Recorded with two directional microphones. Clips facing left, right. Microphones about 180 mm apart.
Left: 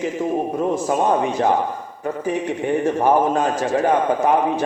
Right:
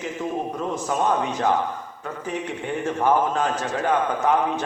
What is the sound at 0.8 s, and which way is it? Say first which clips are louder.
Speech: left 2 dB; 30° left (ahead or behind).